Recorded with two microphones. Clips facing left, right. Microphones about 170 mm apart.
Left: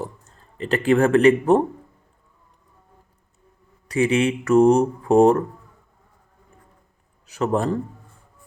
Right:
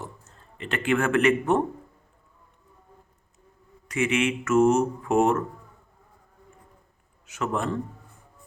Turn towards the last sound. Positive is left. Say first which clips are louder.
# left 6 dB
turn(degrees=35)  # may be behind; listen again after turning